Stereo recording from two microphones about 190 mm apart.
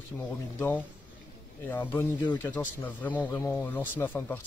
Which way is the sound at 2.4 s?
10° left (ahead or behind).